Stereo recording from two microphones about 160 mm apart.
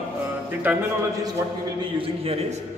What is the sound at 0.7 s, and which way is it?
Speech, 10° right (ahead or behind).